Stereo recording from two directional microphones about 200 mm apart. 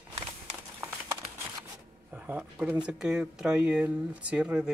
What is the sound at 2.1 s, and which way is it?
Speech, 10° right (ahead or behind).